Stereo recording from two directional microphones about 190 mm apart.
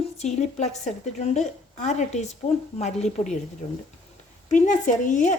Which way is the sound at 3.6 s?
25° left (ahead or behind).